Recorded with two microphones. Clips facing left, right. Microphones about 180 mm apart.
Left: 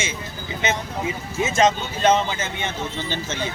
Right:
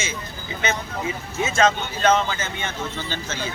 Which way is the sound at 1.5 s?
15° left (ahead or behind).